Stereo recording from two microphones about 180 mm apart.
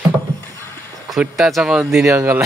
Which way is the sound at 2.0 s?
15° right (ahead or behind).